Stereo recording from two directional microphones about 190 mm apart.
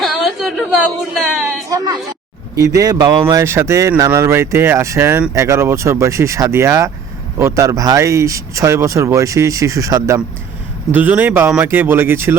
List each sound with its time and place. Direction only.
0.0 s chatter: centre (ahead or behind)
1.2 s speech: centre (ahead or behind)
2.6 s speech: 20° right (ahead or behind)